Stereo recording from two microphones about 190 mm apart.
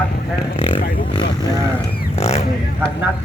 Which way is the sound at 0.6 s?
30° left (ahead or behind).